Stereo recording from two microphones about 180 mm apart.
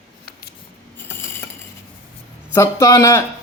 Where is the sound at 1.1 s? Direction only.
15° left (ahead or behind).